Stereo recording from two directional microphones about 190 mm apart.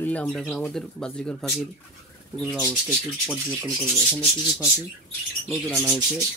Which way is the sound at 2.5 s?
10° right (ahead or behind).